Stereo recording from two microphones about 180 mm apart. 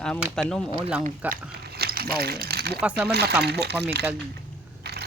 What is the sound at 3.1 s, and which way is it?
Speech, 65° right (ahead or behind).